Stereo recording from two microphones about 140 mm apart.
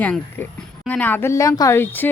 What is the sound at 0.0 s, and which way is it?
Speech, 10° left (ahead or behind).